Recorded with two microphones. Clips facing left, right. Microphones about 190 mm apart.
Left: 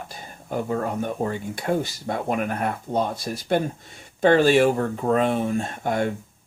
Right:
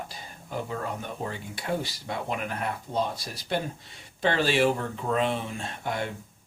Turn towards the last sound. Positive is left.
turn(degrees=50)  # may be behind; listen again after turning